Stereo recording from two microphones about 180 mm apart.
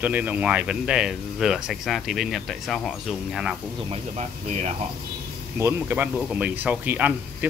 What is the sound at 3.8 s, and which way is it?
Speech, 35° right (ahead or behind).